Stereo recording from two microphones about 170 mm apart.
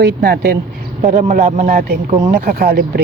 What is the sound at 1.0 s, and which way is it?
Speech, 50° right (ahead or behind).